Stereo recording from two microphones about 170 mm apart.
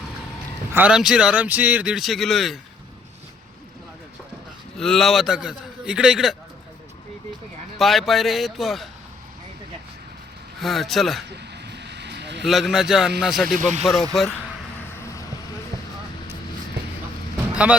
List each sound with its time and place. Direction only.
0.7 s speech: 10° right (ahead or behind)
4.8 s speech: centre (ahead or behind)
7.8 s speech: centre (ahead or behind)
10.6 s speech: centre (ahead or behind)
11.3 s vehicle: 85° right
12.4 s speech: centre (ahead or behind)
13.6 s speech: 45° right (ahead or behind)
14.1 s speech: centre (ahead or behind)
17.5 s music: 10° right (ahead or behind)